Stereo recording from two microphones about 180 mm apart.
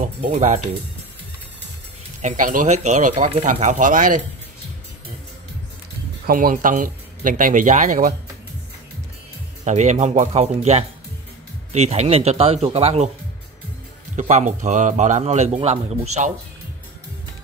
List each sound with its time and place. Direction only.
0.0 s speech: 45° right (ahead or behind)
2.2 s speech: 45° right (ahead or behind)
6.2 s speech: 50° right (ahead or behind)
9.7 s a man's voice: 40° right (ahead or behind)
14.1 s a man's voice: 40° right (ahead or behind)